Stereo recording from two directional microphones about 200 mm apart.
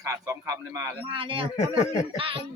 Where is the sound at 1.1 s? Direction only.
25° right (ahead or behind).